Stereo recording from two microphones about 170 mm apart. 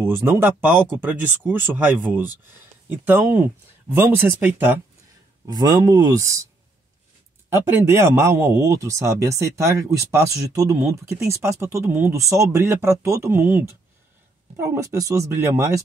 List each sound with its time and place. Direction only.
0.0 s a man's voice: 15° right (ahead or behind)
5.5 s speech: 20° right (ahead or behind)
7.4 s a man's voice: 15° right (ahead or behind)